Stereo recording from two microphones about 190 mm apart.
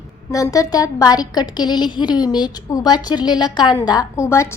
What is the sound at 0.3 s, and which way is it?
A woman's voice, 15° left (ahead or behind).